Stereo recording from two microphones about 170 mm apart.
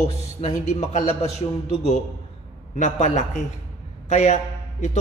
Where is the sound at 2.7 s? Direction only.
45° left (ahead or behind).